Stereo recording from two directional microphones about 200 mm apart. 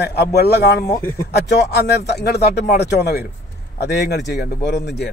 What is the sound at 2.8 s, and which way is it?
Speech, 55° left (ahead or behind).